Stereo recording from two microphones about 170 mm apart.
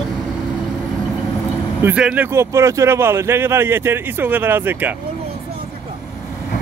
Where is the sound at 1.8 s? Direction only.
10° right (ahead or behind).